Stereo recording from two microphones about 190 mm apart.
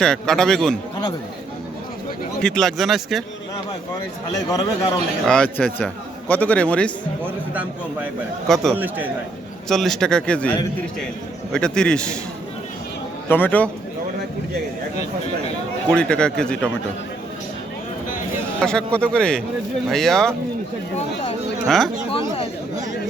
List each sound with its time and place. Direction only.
0.0 s speech: 5° left (ahead or behind)
2.4 s speech: 5° left (ahead or behind)
4.4 s a man's voice: 20° left (ahead or behind)
5.2 s a man's voice: 5° left (ahead or behind)
8.4 s speech: centre (ahead or behind)
8.7 s speech: 10° right (ahead or behind)
9.6 s speech: centre (ahead or behind)
11.5 s speech: 5° left (ahead or behind)
13.2 s a man's voice: 10° left (ahead or behind)
15.9 s speech: 5° left (ahead or behind)
18.6 s speech: 5° left (ahead or behind)